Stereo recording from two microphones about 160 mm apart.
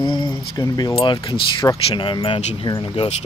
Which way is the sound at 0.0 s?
30° left (ahead or behind).